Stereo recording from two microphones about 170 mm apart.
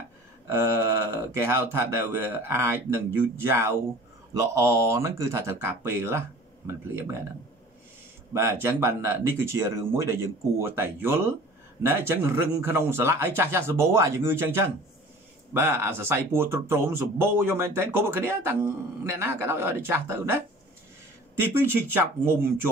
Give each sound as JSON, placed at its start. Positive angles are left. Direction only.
{"t": 0.5, "sound": "speech", "side_deg": -15}
{"t": 8.3, "sound": "speech", "side_deg": -15}
{"t": 21.4, "sound": "speech", "side_deg": -15}